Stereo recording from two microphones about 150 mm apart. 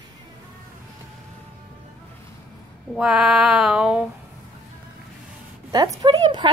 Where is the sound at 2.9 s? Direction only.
5° right (ahead or behind).